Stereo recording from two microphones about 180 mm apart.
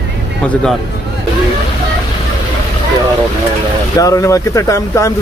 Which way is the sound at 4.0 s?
20° left (ahead or behind).